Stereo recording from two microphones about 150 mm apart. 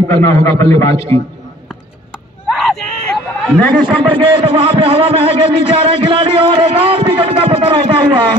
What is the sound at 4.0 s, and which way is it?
A man's voice, 35° right (ahead or behind).